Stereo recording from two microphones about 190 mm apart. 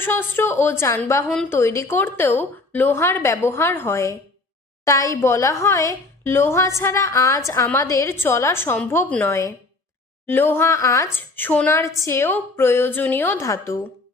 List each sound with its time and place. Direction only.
0.0 s a woman's voice: 10° left (ahead or behind)